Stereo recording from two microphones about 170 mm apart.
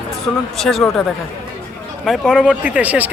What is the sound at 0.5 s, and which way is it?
Speech, centre (ahead or behind).